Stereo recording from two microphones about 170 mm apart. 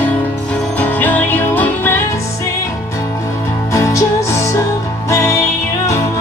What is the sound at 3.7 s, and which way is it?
Music, 20° left (ahead or behind).